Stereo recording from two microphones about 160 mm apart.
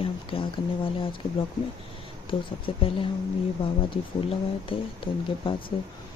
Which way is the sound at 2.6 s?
35° left (ahead or behind).